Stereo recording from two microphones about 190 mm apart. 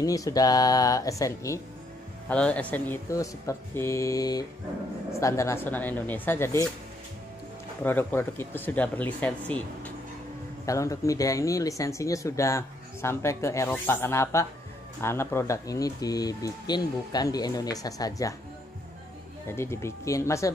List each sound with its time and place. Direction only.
0.0 s speech: 20° left (ahead or behind)
2.2 s speech: 5° left (ahead or behind)
7.8 s speech: 10° left (ahead or behind)
19.4 s speech: 15° left (ahead or behind)